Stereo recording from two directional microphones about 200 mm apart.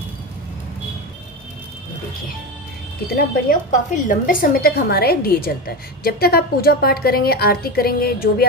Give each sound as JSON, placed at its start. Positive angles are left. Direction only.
{"t": 3.2, "sound": "a woman's voice", "side_deg": 45}